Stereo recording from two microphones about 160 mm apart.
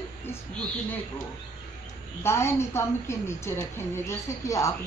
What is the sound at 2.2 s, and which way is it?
A woman's voice, 15° left (ahead or behind).